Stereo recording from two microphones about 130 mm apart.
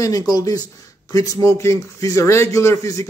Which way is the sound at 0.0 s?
25° left (ahead or behind).